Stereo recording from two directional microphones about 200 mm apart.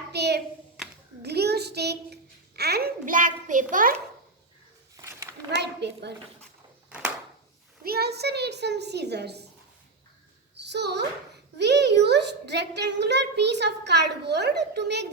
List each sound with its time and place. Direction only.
0.1 s clapping: 55° right (ahead or behind)
1.2 s child singing: 55° right (ahead or behind)
2.6 s a child's voice: 50° right (ahead or behind)
4.9 s a sound: 15° right (ahead or behind)
5.5 s a child's voice: 60° right (ahead or behind)
7.9 s a child's voice: 55° right (ahead or behind)
10.5 s a sound: 60° right (ahead or behind)
11.5 s a child's voice: 60° right (ahead or behind)